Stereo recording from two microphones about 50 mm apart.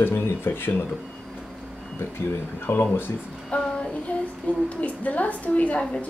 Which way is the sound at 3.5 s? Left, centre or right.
Left.